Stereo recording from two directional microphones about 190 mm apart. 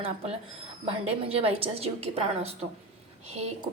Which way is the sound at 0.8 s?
30° right (ahead or behind).